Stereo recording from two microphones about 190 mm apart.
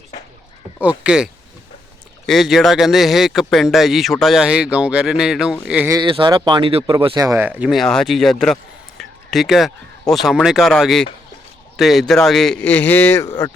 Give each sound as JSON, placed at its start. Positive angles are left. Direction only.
{"t": 0.8, "sound": "speech", "side_deg": -5}
{"t": 5.9, "sound": "speech", "side_deg": -25}